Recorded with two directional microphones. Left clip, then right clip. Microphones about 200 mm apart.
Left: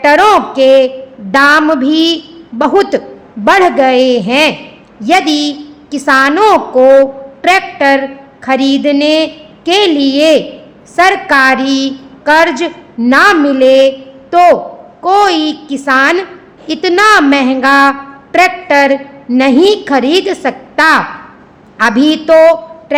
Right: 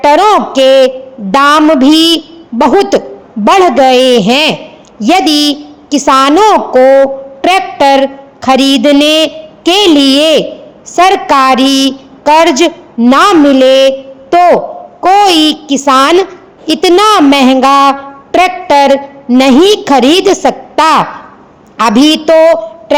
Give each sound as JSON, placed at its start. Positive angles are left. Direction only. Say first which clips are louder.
{"t": 0.0, "sound": "a woman's voice", "louder": "right 1 dB", "side_deg": -30}